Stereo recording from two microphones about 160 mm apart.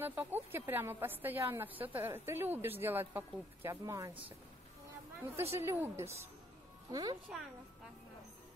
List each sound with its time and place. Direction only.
0.0 s a woman's voice: 10° right (ahead or behind)
5.3 s a woman's voice: 15° right (ahead or behind)